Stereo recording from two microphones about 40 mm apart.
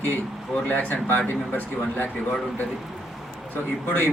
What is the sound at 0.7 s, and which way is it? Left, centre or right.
Speech, left.